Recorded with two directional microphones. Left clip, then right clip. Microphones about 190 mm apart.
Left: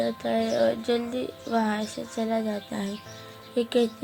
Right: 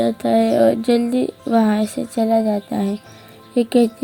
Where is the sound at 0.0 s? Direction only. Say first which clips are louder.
Right 9 dB; 45° right (ahead or behind).